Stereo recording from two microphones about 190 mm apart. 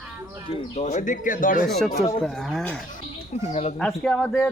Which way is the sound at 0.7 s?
40° left (ahead or behind).